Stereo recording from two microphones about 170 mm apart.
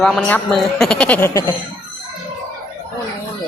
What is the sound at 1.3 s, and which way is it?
Speech, 20° left (ahead or behind).